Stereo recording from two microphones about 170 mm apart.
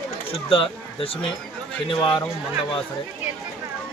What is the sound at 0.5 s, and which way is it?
A man's voice, 30° left (ahead or behind).